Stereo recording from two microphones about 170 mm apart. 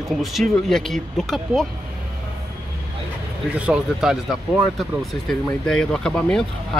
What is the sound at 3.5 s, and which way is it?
Speech, 5° right (ahead or behind).